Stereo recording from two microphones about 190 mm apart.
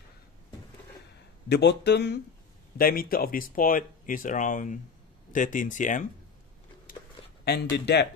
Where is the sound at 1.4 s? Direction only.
60° left (ahead or behind).